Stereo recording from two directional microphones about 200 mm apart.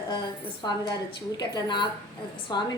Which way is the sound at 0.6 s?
20° left (ahead or behind).